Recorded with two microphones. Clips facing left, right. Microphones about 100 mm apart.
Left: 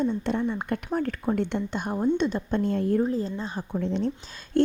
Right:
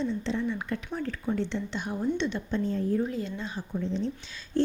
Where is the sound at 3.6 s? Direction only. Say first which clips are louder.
Left 4 dB; 60° left (ahead or behind).